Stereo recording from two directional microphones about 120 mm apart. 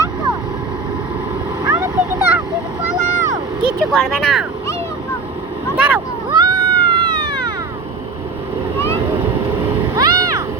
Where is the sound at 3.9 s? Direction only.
Centre (ahead or behind).